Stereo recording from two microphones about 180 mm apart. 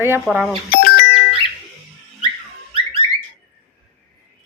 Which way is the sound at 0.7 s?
55° left (ahead or behind).